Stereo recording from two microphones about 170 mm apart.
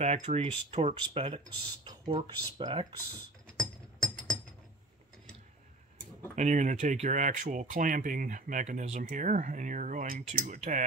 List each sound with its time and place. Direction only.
0.0 s speech: 40° right (ahead or behind)
3.5 s music: 5° left (ahead or behind)
6.3 s speech: 45° right (ahead or behind)